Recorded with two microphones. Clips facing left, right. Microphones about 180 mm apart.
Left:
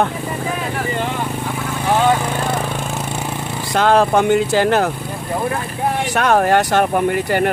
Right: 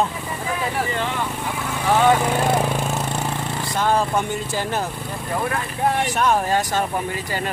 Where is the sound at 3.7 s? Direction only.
80° left.